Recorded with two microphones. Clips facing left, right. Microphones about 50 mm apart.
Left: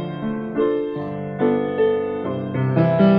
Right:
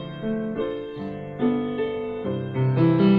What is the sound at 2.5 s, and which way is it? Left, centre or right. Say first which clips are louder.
Music: left 2 dB; left.